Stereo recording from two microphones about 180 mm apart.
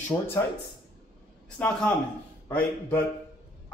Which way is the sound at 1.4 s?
5° left (ahead or behind).